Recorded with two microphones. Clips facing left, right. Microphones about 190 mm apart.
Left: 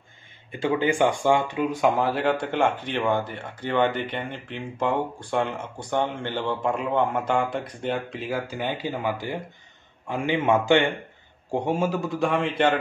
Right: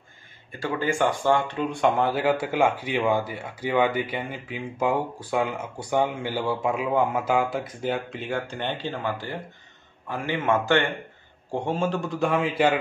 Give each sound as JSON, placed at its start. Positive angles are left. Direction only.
{"t": 0.5, "sound": "a man's voice", "side_deg": 20}